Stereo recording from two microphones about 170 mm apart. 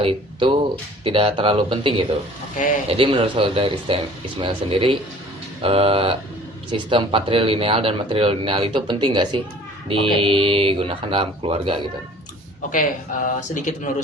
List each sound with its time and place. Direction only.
0.0 s speech: 30° right (ahead or behind)
13.2 s speech: 50° left (ahead or behind)